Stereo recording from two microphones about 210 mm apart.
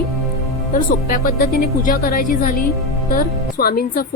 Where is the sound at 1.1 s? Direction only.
45° left (ahead or behind).